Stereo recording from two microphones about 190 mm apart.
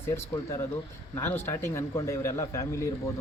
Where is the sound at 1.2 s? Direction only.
10° left (ahead or behind).